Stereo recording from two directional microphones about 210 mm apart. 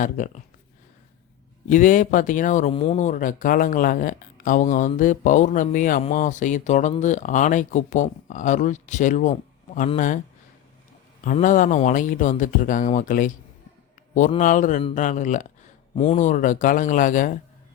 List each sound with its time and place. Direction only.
0.2 s speech: 35° left (ahead or behind)
1.7 s speech: 40° left (ahead or behind)
11.2 s speech: 40° left (ahead or behind)